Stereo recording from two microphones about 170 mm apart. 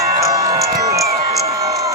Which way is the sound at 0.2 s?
20° right (ahead or behind).